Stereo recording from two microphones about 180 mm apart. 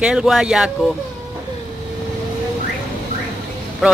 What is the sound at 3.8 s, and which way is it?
Speech, centre (ahead or behind).